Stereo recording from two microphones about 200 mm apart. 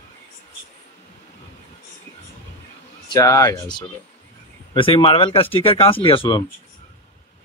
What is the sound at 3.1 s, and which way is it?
Speech, 15° left (ahead or behind).